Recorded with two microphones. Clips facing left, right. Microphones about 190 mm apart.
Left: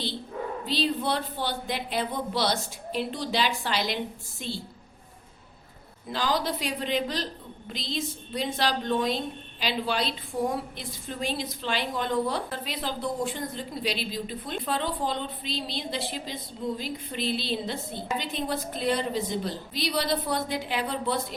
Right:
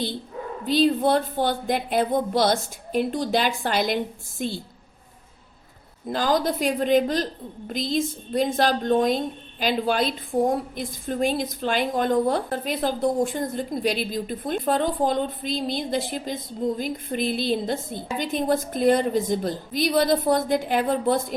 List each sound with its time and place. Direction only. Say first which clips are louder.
0.6 s a woman's voice: right 9 dB; 50° right (ahead or behind)
6.1 s a woman's voice: right 5 dB; 45° right (ahead or behind)